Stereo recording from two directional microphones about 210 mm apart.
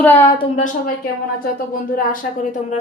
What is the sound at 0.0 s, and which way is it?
Speech, 10° left (ahead or behind).